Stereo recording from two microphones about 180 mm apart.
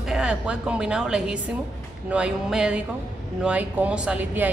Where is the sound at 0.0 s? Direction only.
5° right (ahead or behind).